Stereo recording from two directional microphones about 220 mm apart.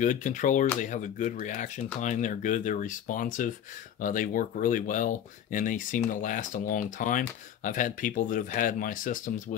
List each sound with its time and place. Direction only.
0.0 s speech: 35° left (ahead or behind)